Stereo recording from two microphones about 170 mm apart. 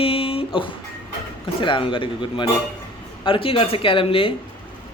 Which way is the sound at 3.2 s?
30° left (ahead or behind).